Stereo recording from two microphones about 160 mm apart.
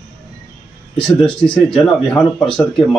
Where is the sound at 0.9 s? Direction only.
35° left (ahead or behind).